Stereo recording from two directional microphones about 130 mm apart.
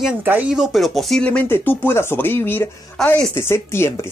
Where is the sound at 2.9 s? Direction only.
5° left (ahead or behind).